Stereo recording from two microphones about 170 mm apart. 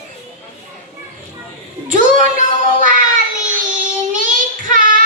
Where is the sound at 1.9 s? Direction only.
50° right (ahead or behind).